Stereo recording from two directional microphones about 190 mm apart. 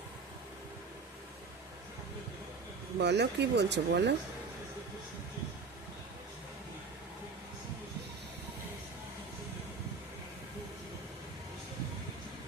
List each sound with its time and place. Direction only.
3.0 s speech: 65° right (ahead or behind)